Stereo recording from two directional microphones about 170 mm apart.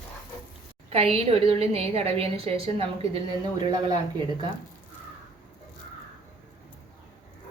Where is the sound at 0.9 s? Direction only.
35° right (ahead or behind).